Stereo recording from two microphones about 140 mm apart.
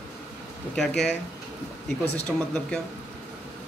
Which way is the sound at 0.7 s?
5° left (ahead or behind).